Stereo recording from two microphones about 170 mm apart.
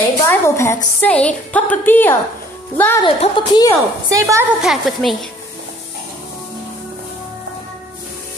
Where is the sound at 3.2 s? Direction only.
30° left (ahead or behind).